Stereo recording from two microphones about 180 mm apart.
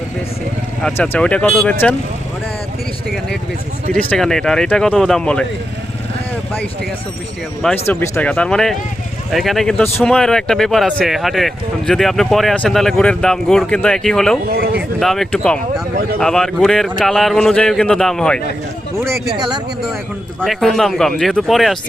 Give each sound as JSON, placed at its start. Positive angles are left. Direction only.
{"t": 0.9, "sound": "speech", "side_deg": 10}
{"t": 4.1, "sound": "speech", "side_deg": 5}
{"t": 7.6, "sound": "speech", "side_deg": 10}
{"t": 14.4, "sound": "speech", "side_deg": -55}
{"t": 14.9, "sound": "speech", "side_deg": 0}
{"t": 19.4, "sound": "speech", "side_deg": -25}
{"t": 20.4, "sound": "speech", "side_deg": 0}